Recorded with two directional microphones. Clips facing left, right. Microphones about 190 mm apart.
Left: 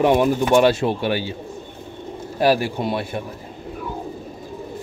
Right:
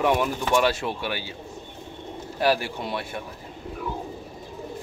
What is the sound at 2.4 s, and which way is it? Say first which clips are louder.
Speech: left 5 dB; 35° left (ahead or behind).